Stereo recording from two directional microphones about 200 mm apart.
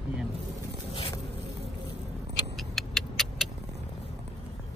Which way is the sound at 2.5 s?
Centre (ahead or behind).